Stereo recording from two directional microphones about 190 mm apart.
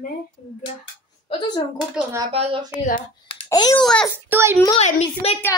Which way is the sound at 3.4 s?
20° left (ahead or behind).